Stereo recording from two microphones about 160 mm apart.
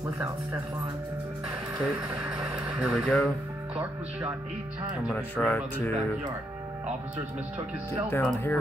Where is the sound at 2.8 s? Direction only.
Centre (ahead or behind).